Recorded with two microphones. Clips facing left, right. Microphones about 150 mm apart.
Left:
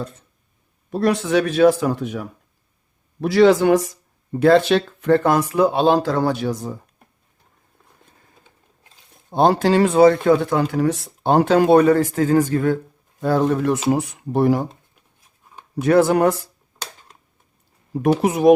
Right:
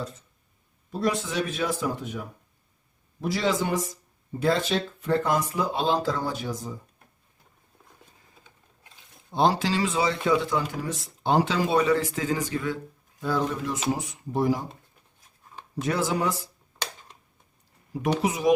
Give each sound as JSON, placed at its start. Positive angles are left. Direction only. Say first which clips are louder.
{"t": 0.9, "sound": "speech", "louder": "left 8 dB", "side_deg": 70}
{"t": 9.3, "sound": "speech", "louder": "left 8 dB", "side_deg": 55}
{"t": 10.6, "sound": "speech", "louder": "left 12 dB", "side_deg": 70}
{"t": 15.8, "sound": "speech", "louder": "left 11 dB", "side_deg": 60}
{"t": 18.0, "sound": "speech", "louder": "left 9 dB", "side_deg": 55}